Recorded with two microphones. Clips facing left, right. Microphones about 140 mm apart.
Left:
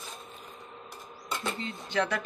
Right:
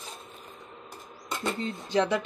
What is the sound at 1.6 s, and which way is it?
Speech, 30° right (ahead or behind).